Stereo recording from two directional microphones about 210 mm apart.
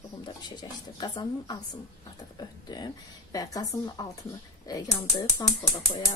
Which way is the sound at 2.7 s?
20° left (ahead or behind).